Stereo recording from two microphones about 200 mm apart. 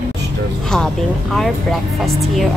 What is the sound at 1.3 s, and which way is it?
Speech, centre (ahead or behind).